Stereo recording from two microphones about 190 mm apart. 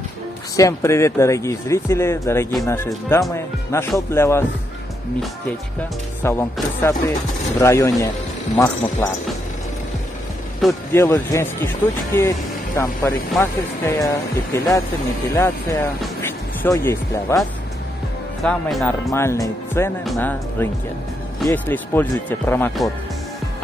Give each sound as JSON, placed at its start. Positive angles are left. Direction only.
{"t": 0.6, "sound": "speech", "side_deg": 15}
{"t": 6.2, "sound": "speech", "side_deg": 15}
{"t": 10.9, "sound": "speech", "side_deg": 15}
{"t": 18.4, "sound": "speech", "side_deg": 0}
{"t": 19.1, "sound": "speech", "side_deg": 15}